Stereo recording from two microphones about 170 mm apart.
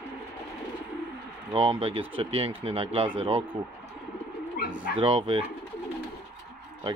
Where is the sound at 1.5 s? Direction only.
35° right (ahead or behind).